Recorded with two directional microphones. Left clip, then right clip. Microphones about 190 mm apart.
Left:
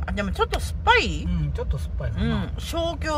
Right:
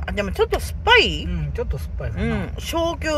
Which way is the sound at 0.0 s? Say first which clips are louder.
Right 4 dB; centre (ahead or behind).